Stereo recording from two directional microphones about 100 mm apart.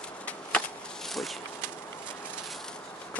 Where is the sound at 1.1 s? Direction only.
Centre (ahead or behind).